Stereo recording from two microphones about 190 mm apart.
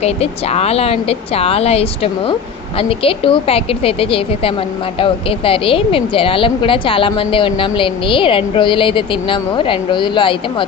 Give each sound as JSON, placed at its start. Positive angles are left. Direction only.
{"t": 0.0, "sound": "a woman's voice", "side_deg": 35}